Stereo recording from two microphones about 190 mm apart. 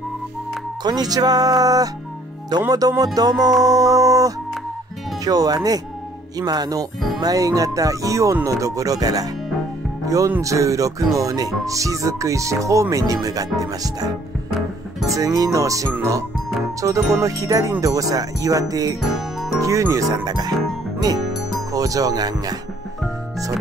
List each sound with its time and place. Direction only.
0.8 s music: 20° right (ahead or behind)
19.0 s music: centre (ahead or behind)
19.6 s music: 15° right (ahead or behind)
21.7 s music: 20° right (ahead or behind)